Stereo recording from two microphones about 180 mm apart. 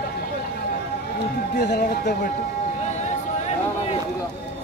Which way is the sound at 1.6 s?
60° left (ahead or behind).